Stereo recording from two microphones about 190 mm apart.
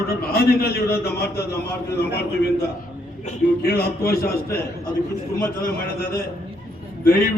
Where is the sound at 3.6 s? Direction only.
55° left (ahead or behind).